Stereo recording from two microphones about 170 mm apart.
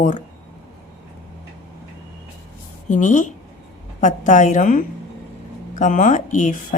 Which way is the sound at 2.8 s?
45° left (ahead or behind).